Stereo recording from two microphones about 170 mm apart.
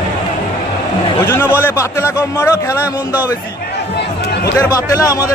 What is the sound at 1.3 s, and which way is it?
Speech, 15° left (ahead or behind).